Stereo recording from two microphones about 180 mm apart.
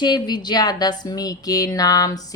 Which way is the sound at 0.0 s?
25° left (ahead or behind).